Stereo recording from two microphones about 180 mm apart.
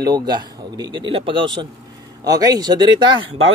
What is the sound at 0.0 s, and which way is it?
Speech, 25° right (ahead or behind).